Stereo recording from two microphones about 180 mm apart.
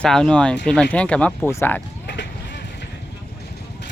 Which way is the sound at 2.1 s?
70° left (ahead or behind).